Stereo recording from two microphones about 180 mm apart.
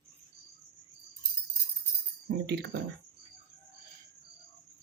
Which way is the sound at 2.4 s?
70° right (ahead or behind).